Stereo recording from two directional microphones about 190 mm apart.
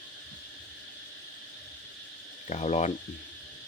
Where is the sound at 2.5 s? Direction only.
35° left (ahead or behind).